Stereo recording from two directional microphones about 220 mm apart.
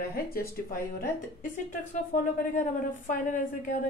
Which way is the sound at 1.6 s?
35° left (ahead or behind).